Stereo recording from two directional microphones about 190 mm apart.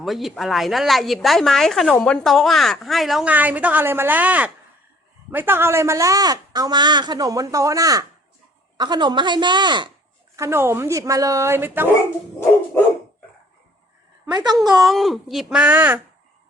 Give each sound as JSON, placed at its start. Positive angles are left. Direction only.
{"t": 0.0, "sound": "speech", "side_deg": 0}
{"t": 14.3, "sound": "speech", "side_deg": -20}
{"t": 14.8, "sound": "speech", "side_deg": 0}